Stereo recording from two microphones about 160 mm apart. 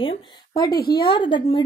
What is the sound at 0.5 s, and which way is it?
A woman's voice, 25° left (ahead or behind).